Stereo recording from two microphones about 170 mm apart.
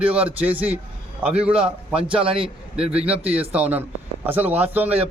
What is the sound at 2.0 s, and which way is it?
Speech, 30° right (ahead or behind).